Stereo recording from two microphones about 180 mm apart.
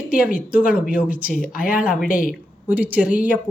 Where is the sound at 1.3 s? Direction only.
50° left (ahead or behind).